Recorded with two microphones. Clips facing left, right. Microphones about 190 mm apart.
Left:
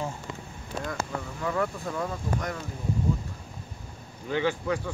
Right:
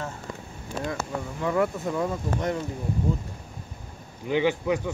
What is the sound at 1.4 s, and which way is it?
A man's voice, 25° right (ahead or behind).